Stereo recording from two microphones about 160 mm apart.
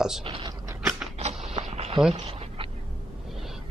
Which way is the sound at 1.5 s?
40° right (ahead or behind).